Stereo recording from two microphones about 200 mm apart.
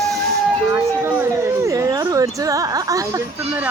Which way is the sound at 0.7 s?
15° right (ahead or behind).